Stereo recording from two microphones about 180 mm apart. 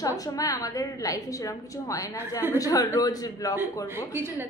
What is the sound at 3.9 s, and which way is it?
Speech, 10° right (ahead or behind).